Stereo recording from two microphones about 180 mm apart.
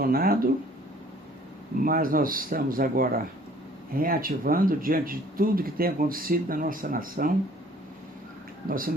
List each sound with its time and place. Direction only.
0.0 s speech: 55° right (ahead or behind)
1.8 s speech: 50° right (ahead or behind)